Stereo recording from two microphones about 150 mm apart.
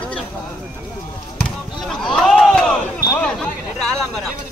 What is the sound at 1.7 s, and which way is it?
Run, centre (ahead or behind).